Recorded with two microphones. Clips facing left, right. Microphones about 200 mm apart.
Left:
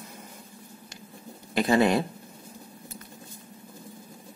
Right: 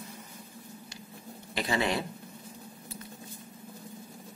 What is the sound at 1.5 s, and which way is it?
Speech, 50° left (ahead or behind).